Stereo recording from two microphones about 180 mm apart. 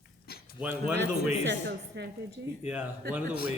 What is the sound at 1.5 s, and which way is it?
Speech, 70° right (ahead or behind).